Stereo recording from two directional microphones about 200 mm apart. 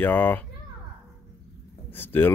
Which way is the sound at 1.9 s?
10° left (ahead or behind).